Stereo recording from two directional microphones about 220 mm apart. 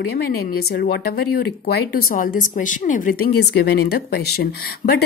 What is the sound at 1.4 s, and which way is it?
A woman's voice, 45° left (ahead or behind).